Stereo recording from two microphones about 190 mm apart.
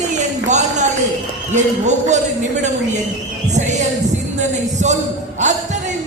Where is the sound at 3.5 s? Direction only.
40° right (ahead or behind).